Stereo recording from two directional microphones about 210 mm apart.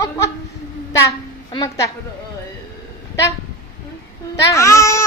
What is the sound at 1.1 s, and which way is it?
Speech, 20° left (ahead or behind).